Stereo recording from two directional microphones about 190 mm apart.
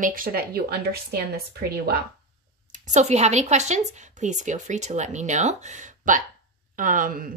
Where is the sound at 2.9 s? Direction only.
35° right (ahead or behind).